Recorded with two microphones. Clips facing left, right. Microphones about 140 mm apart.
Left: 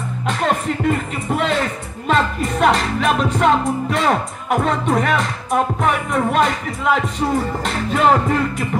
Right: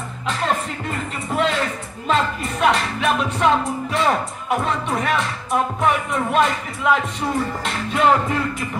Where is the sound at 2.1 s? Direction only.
45° left (ahead or behind).